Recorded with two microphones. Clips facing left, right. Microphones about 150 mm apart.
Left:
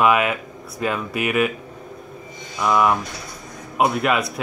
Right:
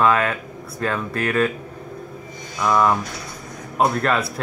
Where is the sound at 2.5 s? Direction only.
10° left (ahead or behind).